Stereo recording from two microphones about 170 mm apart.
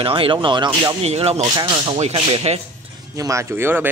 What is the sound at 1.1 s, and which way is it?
Speech, 35° right (ahead or behind).